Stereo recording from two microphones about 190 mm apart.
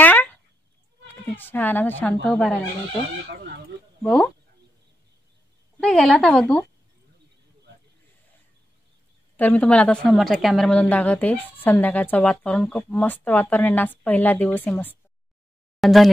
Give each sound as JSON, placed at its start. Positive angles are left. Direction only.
{"t": 0.0, "sound": "a sound", "side_deg": 10}
{"t": 1.0, "sound": "bleat", "side_deg": 10}
{"t": 2.2, "sound": "a woman's voice", "side_deg": 5}
{"t": 4.0, "sound": "a woman's voice", "side_deg": 5}
{"t": 5.8, "sound": "a woman's voice", "side_deg": 5}
{"t": 9.4, "sound": "a woman's voice", "side_deg": 5}